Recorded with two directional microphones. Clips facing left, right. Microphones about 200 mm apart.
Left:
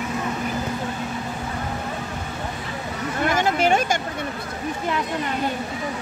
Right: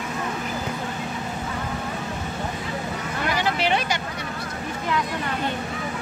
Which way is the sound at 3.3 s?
45° left (ahead or behind).